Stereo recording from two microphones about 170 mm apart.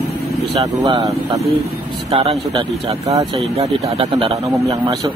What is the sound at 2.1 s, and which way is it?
Speech, 35° right (ahead or behind).